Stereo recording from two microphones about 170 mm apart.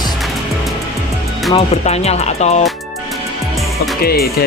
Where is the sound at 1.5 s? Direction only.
40° left (ahead or behind).